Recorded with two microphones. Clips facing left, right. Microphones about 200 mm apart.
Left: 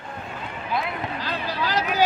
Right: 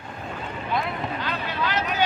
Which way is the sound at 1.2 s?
35° left (ahead or behind).